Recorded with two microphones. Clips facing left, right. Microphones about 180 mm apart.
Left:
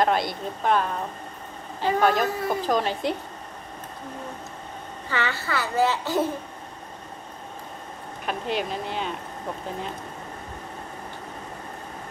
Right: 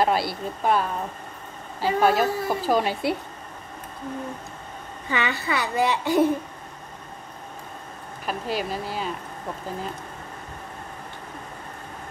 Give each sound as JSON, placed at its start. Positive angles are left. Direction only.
{"t": 0.0, "sound": "a woman's voice", "side_deg": -5}
{"t": 5.1, "sound": "a woman's voice", "side_deg": -15}
{"t": 8.3, "sound": "speech", "side_deg": -5}